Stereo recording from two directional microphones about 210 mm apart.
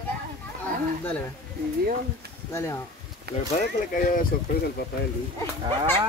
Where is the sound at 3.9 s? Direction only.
40° left (ahead or behind).